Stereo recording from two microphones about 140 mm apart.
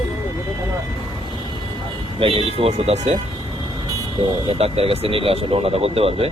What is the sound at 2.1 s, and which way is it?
Speech, 40° right (ahead or behind).